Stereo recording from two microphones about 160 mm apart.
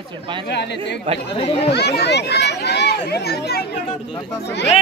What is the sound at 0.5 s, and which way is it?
Speech, 90° left.